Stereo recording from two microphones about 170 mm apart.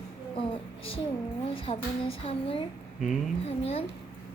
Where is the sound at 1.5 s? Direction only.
35° left (ahead or behind).